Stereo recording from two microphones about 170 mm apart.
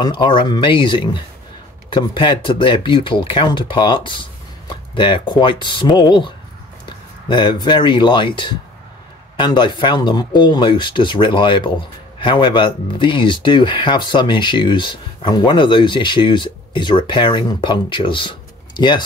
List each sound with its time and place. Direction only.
0.0 s speech: 25° left (ahead or behind)